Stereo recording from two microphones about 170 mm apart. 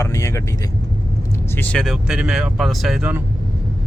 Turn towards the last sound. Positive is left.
turn(degrees=-10)  # may be behind; listen again after turning